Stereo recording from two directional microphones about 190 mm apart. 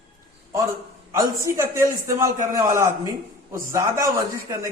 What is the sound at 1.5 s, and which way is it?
A man's voice, 15° right (ahead or behind).